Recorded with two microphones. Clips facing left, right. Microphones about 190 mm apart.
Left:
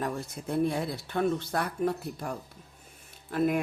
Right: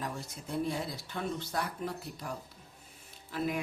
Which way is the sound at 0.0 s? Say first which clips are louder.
Left 6 dB; 60° left (ahead or behind).